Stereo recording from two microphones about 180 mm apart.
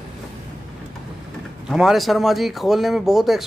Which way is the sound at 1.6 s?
Centre (ahead or behind).